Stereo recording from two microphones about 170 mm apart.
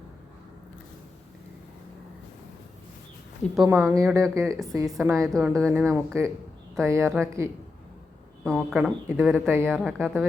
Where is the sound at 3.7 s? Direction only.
15° right (ahead or behind).